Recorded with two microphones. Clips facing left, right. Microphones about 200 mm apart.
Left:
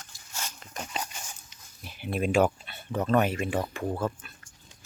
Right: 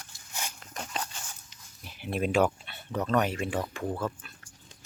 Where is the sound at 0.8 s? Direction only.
10° left (ahead or behind).